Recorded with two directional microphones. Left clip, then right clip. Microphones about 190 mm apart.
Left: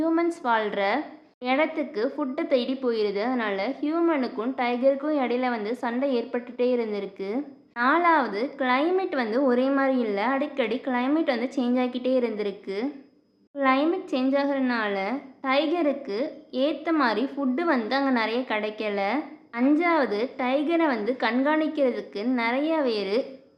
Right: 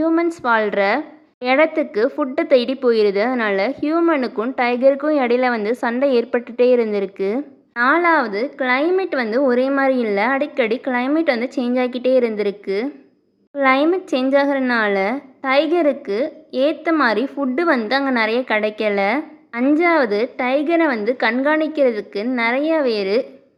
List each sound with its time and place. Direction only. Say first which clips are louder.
0.0 s a woman's voice: right 6 dB; 30° right (ahead or behind)